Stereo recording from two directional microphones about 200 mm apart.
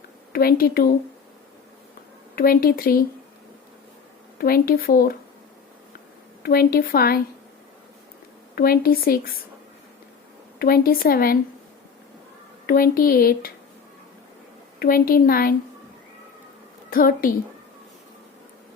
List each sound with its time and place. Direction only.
0.3 s speech: 50° left (ahead or behind)
2.3 s speech: 50° left (ahead or behind)
4.4 s speech: 50° left (ahead or behind)
6.4 s speech: 50° left (ahead or behind)
8.5 s speech: 50° left (ahead or behind)
10.6 s speech: 50° left (ahead or behind)
12.6 s speech: 45° left (ahead or behind)
14.8 s speech: 45° left (ahead or behind)
16.9 s speech: 45° left (ahead or behind)